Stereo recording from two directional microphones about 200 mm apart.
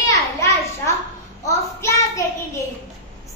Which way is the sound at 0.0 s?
15° left (ahead or behind).